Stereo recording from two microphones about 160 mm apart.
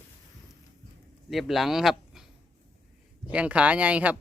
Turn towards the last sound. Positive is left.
turn(degrees=-10)  # may be behind; listen again after turning